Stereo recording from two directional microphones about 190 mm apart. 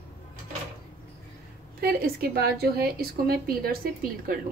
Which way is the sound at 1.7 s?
55° right (ahead or behind).